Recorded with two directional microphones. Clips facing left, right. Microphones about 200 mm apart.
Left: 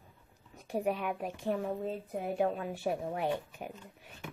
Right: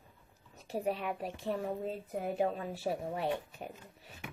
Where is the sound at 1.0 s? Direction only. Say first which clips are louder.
Left 2 dB; centre (ahead or behind).